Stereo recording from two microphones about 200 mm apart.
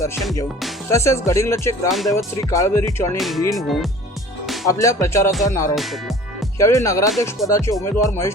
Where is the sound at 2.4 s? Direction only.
15° left (ahead or behind).